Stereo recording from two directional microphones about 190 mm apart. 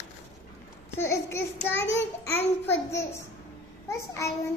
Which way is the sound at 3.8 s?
15° left (ahead or behind).